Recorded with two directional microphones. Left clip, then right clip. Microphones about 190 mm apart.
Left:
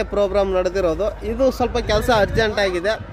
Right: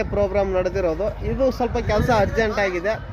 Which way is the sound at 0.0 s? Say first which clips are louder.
Left 2 dB; 25° left (ahead or behind).